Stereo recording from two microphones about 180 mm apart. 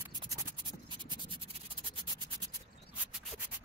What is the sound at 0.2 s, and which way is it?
Scratch, 25° right (ahead or behind).